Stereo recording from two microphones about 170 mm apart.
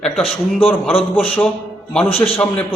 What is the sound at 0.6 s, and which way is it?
Speech, 35° left (ahead or behind).